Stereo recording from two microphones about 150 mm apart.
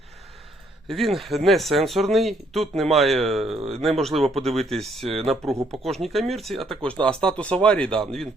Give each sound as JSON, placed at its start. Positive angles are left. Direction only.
{"t": 0.9, "sound": "speech", "side_deg": 0}
{"t": 3.6, "sound": "speech", "side_deg": -40}
{"t": 3.8, "sound": "speech", "side_deg": 0}
{"t": 5.0, "sound": "speech", "side_deg": -40}
{"t": 5.8, "sound": "speech", "side_deg": 0}